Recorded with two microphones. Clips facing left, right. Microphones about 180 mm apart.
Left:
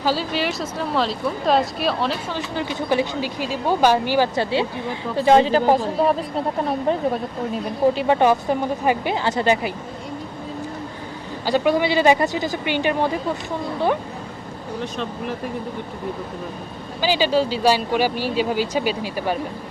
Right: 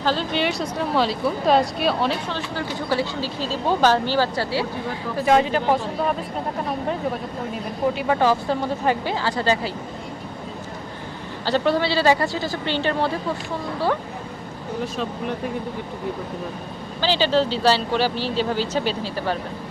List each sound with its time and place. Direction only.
0.0 s speech: 5° left (ahead or behind)
2.3 s speech: 20° left (ahead or behind)
5.1 s speech: 30° left (ahead or behind)
11.4 s speech: 10° left (ahead or behind)
17.0 s speech: 10° left (ahead or behind)